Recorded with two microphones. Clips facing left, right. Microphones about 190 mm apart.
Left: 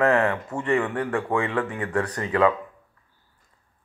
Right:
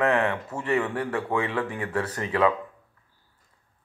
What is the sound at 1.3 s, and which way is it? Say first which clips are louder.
Speech: left 1 dB; 20° right (ahead or behind).